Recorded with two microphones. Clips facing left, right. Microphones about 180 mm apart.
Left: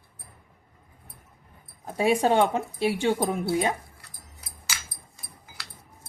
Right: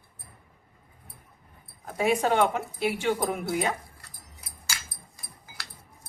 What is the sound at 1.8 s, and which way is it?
Speech, 30° left (ahead or behind).